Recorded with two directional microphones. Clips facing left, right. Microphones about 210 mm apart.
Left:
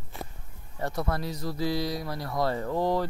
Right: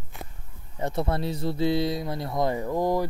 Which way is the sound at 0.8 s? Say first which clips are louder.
Right 3 dB; 25° right (ahead or behind).